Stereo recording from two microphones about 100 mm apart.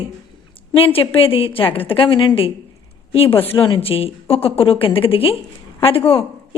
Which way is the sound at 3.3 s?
25° left (ahead or behind).